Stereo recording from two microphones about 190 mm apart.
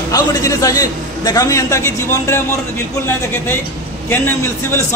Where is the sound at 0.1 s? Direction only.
20° left (ahead or behind).